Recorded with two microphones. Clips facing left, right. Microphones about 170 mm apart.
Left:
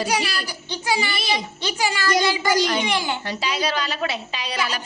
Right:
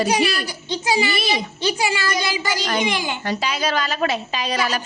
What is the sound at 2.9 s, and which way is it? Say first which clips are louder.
Speech: even; 15° right (ahead or behind).